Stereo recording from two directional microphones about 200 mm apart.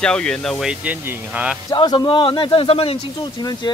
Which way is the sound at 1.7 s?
20° left (ahead or behind).